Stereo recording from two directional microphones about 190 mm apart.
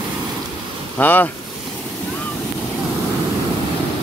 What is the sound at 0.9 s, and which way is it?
Speech, 10° left (ahead or behind).